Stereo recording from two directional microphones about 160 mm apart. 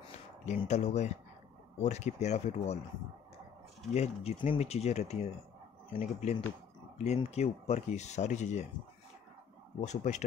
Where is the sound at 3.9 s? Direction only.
40° left (ahead or behind).